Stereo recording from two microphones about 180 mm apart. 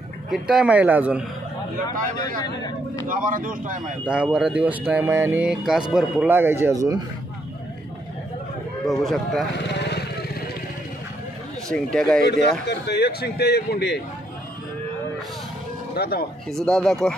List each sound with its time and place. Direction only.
0.3 s speech: 5° right (ahead or behind)
2.1 s speech: 20° left (ahead or behind)
3.1 s speech: 50° right (ahead or behind)
4.0 s speech: 5° right (ahead or behind)
8.8 s speech: centre (ahead or behind)
9.6 s vehicle: 70° left (ahead or behind)
11.7 s speech: 5° left (ahead or behind)
12.6 s a man's voice: 70° left (ahead or behind)
15.9 s speech: 60° left (ahead or behind)
16.4 s speech: 5° left (ahead or behind)